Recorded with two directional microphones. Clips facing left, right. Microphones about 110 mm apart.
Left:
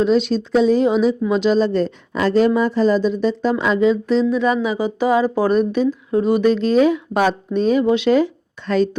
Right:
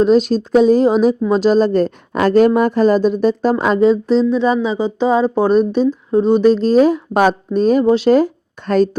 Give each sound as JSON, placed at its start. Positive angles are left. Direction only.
{"t": 0.0, "sound": "a woman's voice", "side_deg": -45}